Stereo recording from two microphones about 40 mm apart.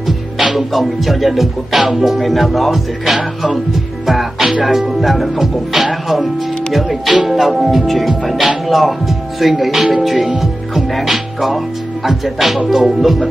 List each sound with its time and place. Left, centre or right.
0.0 s music: centre
4.0 s music: centre
4.4 s music: centre
4.6 s speech: centre
6.7 s music: centre
10.0 s speech: centre